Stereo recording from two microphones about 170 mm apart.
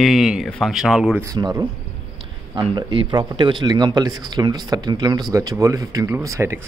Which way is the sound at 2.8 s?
30° right (ahead or behind).